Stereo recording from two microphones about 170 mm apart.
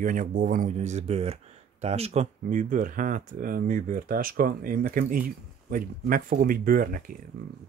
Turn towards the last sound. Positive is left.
turn(degrees=-55)  # may be behind; listen again after turning